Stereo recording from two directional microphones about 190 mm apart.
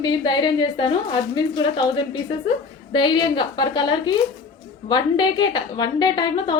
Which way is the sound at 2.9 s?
25° left (ahead or behind).